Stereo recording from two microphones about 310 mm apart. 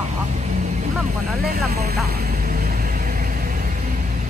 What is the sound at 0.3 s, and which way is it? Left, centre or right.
Vehicle, right.